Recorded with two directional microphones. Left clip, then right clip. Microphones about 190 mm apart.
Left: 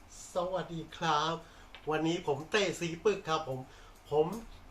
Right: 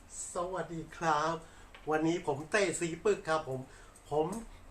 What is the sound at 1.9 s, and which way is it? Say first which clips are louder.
Speech: even; 10° right (ahead or behind).